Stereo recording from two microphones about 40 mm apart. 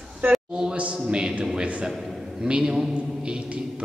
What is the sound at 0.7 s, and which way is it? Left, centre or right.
A man's voice, right.